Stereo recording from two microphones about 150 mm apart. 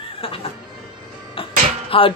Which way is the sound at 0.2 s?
40° left (ahead or behind).